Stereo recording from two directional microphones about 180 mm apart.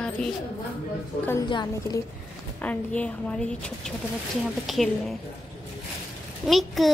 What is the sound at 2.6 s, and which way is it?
A child's voice, 5° left (ahead or behind).